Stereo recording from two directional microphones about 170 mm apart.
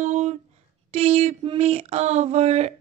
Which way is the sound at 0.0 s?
40° right (ahead or behind).